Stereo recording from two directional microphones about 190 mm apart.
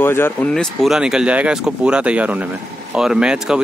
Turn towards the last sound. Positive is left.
turn(degrees=-5)  # may be behind; listen again after turning